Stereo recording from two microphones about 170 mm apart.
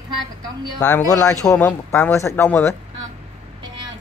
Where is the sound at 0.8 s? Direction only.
20° left (ahead or behind).